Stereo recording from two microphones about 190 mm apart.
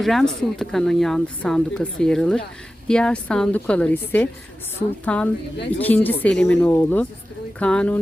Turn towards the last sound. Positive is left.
turn(degrees=5)  # may be behind; listen again after turning